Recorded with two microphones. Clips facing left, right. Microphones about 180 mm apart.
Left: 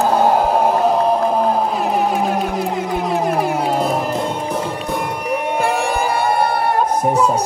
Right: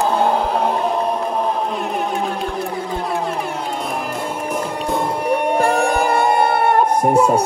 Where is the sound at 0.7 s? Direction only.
35° left (ahead or behind).